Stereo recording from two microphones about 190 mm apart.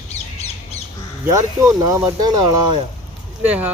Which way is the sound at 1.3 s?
15° right (ahead or behind).